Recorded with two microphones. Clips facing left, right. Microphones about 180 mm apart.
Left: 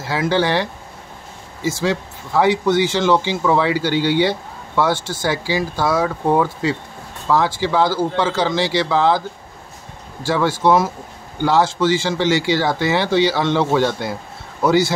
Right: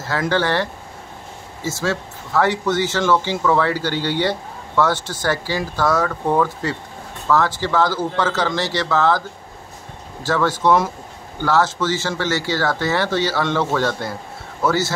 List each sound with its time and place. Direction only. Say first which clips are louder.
0.0 s speech: left 2 dB; 10° left (ahead or behind)
10.2 s speech: left 1 dB; 10° left (ahead or behind)